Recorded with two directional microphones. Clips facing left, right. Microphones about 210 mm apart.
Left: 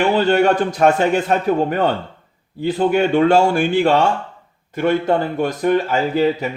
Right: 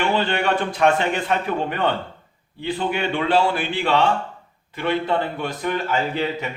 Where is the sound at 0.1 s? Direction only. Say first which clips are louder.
Left 7 dB; 40° left (ahead or behind).